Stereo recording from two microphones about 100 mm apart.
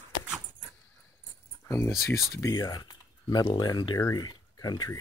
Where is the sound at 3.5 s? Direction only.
45° left (ahead or behind).